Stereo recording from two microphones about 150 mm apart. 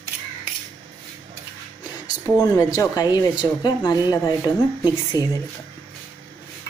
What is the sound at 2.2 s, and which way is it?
Speech, 10° left (ahead or behind).